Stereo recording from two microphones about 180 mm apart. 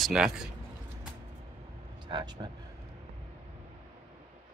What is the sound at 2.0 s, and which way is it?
Speech, 25° right (ahead or behind).